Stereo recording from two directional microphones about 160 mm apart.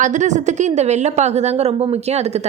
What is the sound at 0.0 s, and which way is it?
A woman's voice, 50° right (ahead or behind).